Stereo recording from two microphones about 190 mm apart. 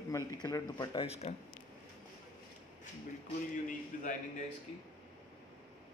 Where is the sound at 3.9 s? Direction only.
45° left (ahead or behind).